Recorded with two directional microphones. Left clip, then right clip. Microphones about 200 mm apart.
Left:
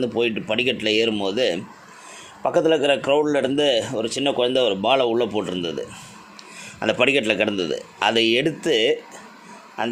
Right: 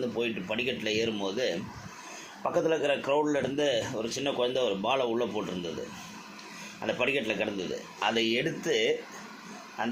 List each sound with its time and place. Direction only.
0.0 s speech: 50° left (ahead or behind)
6.7 s speech: 55° left (ahead or behind)